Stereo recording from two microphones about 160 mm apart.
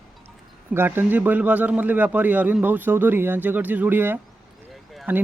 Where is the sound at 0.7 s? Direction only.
15° right (ahead or behind).